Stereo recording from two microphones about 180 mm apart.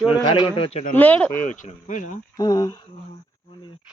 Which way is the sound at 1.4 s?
45° left (ahead or behind).